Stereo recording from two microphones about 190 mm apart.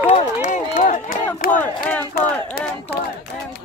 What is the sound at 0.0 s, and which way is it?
Run, 35° left (ahead or behind).